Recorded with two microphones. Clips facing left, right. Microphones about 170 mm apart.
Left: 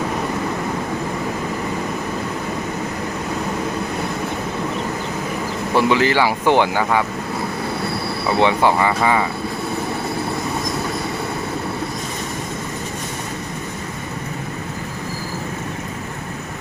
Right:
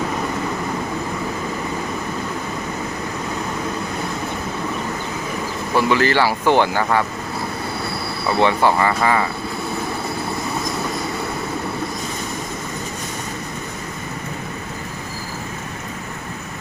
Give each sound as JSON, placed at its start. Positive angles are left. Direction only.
{"t": 5.7, "sound": "speech", "side_deg": 15}
{"t": 8.3, "sound": "speech", "side_deg": 15}